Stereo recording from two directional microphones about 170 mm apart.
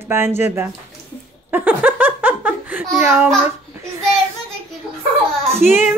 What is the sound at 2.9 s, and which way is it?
Speech, 10° right (ahead or behind).